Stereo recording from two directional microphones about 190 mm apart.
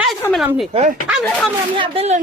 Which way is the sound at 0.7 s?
35° right (ahead or behind).